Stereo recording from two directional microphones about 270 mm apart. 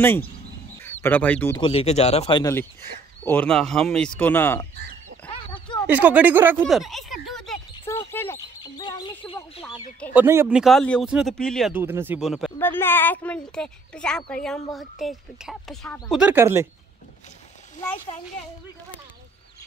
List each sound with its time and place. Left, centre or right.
1.0 s speech: centre
1.6 s speech: left
3.3 s speech: centre
5.9 s speech: centre
6.6 s a sound: centre
10.1 s speech: centre
17.7 s speech: centre